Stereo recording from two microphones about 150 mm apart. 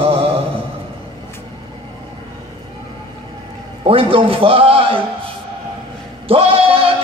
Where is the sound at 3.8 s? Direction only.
35° right (ahead or behind).